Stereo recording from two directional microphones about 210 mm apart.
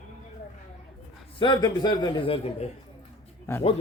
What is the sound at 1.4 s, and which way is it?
A man's voice, 20° left (ahead or behind).